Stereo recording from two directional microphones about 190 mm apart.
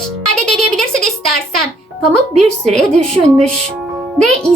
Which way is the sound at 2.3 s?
5° left (ahead or behind).